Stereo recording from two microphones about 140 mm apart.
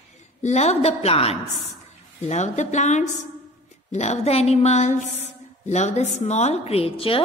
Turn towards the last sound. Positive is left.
turn(degrees=40)  # may be behind; listen again after turning